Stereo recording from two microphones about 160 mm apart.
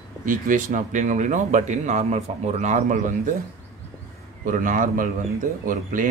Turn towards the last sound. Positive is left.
turn(degrees=-55)  # may be behind; listen again after turning